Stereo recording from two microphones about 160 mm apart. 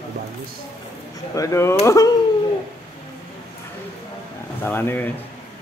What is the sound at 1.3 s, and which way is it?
Speech, 20° left (ahead or behind).